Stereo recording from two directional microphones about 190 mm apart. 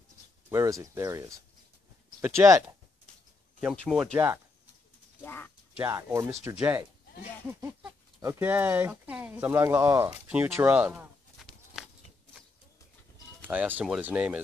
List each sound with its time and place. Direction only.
0.5 s speech: 15° right (ahead or behind)
3.8 s speech: 5° right (ahead or behind)
5.2 s speech: 10° left (ahead or behind)
5.8 s speech: 10° right (ahead or behind)
7.4 s speech: 10° right (ahead or behind)
13.4 s speech: 10° right (ahead or behind)